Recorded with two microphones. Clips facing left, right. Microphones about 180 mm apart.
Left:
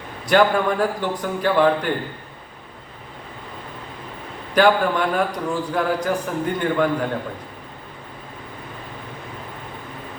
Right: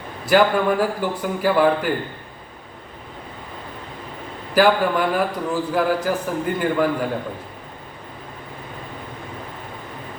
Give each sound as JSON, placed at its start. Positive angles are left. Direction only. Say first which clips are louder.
{"t": 0.3, "sound": "a man's voice", "louder": "right 1 dB", "side_deg": -5}
{"t": 4.5, "sound": "a man's voice", "louder": "even", "side_deg": -5}